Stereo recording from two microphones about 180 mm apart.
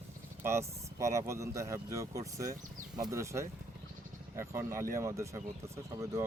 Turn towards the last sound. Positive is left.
turn(degrees=-15)  # may be behind; listen again after turning